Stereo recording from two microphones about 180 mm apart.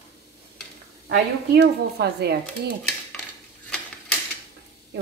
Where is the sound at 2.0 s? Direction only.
65° right (ahead or behind).